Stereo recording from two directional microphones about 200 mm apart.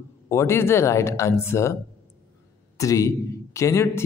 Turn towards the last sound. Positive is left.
turn(degrees=15)  # may be behind; listen again after turning